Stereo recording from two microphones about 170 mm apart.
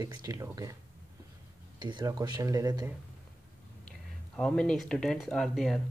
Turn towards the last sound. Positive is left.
turn(degrees=0)  # may be behind; listen again after turning